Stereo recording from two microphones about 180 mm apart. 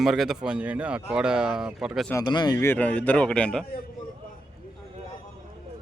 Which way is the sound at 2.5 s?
10° left (ahead or behind).